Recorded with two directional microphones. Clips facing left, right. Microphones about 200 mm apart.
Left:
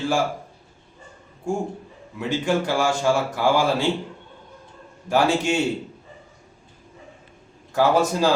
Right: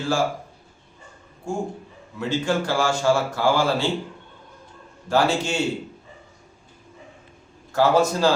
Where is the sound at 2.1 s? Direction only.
15° left (ahead or behind).